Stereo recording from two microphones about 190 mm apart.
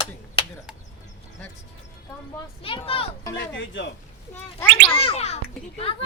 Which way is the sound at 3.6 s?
75° left (ahead or behind).